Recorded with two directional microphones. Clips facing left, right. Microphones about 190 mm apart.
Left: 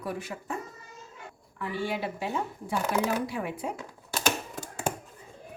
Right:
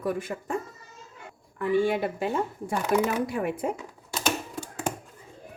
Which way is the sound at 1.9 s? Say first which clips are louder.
Right 5 dB; 50° right (ahead or behind).